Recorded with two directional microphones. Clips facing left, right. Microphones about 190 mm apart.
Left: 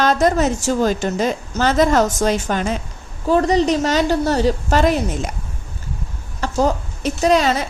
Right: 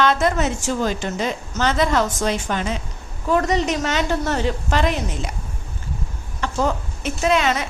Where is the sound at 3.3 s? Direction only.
35° left (ahead or behind).